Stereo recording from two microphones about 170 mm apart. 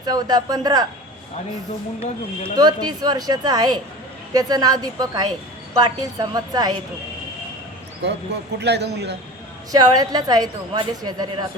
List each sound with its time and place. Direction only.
0.0 s a woman's voice: 25° right (ahead or behind)
2.6 s a woman's voice: 25° right (ahead or behind)
8.0 s speech: 80° right
9.7 s a woman's voice: 20° right (ahead or behind)